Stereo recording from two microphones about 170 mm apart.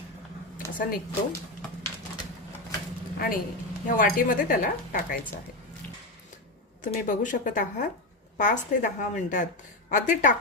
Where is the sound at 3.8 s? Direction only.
55° left (ahead or behind).